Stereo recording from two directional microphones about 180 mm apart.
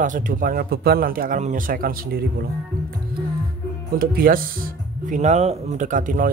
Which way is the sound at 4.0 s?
55° right (ahead or behind).